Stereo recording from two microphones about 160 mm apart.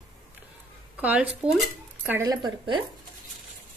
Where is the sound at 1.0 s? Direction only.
10° right (ahead or behind).